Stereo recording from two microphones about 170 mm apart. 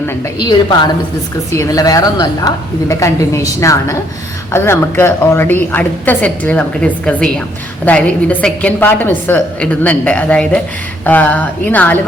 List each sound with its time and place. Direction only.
1.5 s a woman's voice: 20° left (ahead or behind)